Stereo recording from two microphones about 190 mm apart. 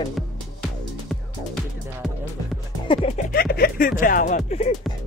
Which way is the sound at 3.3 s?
55° left (ahead or behind).